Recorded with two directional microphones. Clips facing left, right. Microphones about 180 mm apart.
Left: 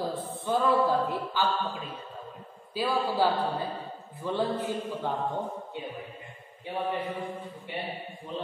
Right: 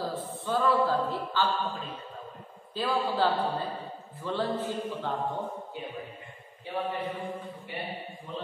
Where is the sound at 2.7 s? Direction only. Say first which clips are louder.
Left 1 dB; 10° left (ahead or behind).